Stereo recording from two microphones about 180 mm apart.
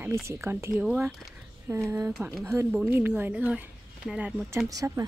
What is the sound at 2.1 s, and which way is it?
Speech, centre (ahead or behind).